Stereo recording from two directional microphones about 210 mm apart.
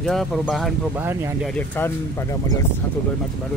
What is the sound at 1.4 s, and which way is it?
Speech, 10° left (ahead or behind).